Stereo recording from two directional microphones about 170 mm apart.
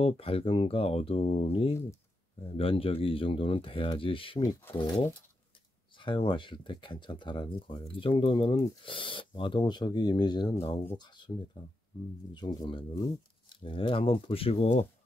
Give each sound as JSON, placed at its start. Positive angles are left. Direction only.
{"t": 0.0, "sound": "speech", "side_deg": 35}